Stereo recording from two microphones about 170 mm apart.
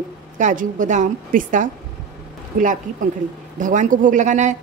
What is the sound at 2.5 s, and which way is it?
Speech, 60° right (ahead or behind).